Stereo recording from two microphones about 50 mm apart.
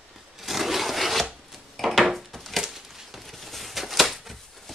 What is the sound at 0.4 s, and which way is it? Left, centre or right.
Rub, centre.